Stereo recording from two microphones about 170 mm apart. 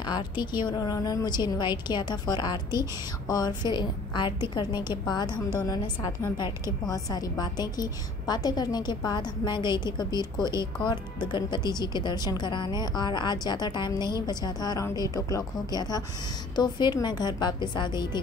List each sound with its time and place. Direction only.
0.0 s a woman's voice: 25° left (ahead or behind)